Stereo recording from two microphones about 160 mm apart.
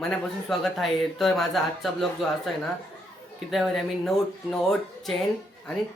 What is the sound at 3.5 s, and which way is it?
A man's voice, centre (ahead or behind).